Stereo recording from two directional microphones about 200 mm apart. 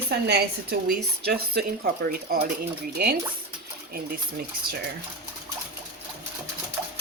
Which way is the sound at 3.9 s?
50° right (ahead or behind).